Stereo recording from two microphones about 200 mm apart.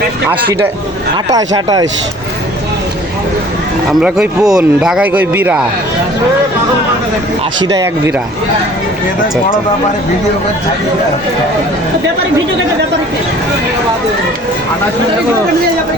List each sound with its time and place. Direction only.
1.3 s speech: 20° right (ahead or behind)
4.0 s speech: 5° right (ahead or behind)
7.6 s speech: 20° right (ahead or behind)